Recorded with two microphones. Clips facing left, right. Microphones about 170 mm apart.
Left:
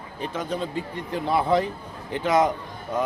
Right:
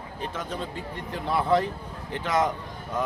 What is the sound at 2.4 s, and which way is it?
Speech, 20° left (ahead or behind).